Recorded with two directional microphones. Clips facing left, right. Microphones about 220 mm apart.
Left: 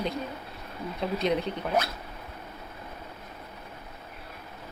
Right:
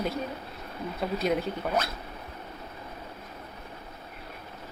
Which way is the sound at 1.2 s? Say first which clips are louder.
Even; centre (ahead or behind).